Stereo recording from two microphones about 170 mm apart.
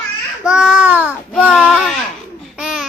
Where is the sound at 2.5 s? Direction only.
5° right (ahead or behind).